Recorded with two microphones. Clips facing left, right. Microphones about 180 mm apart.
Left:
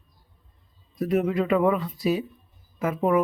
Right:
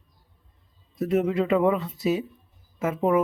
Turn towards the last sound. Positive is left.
turn(degrees=-25)  # may be behind; listen again after turning